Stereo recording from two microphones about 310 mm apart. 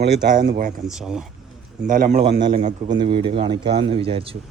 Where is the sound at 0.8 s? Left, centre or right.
Centre.